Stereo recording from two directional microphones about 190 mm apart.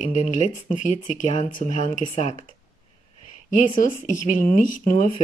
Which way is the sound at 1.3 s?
35° left (ahead or behind).